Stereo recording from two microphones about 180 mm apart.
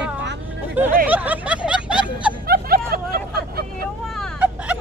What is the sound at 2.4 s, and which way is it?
Hubbub, 55° right (ahead or behind).